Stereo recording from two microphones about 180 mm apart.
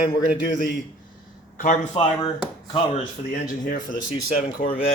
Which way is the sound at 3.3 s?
50° left (ahead or behind).